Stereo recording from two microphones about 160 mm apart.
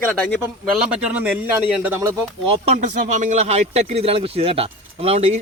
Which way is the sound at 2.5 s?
45° right (ahead or behind).